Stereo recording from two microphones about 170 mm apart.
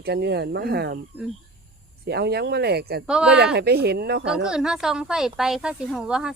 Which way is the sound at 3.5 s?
70° right (ahead or behind).